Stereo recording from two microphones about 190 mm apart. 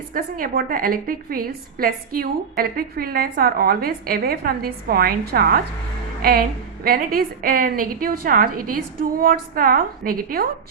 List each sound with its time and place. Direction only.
0.1 s a woman's voice: 50° right (ahead or behind)
6.8 s a woman's voice: 50° right (ahead or behind)